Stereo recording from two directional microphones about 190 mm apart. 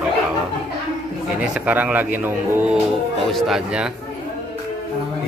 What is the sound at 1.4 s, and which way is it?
Speech, 10° right (ahead or behind).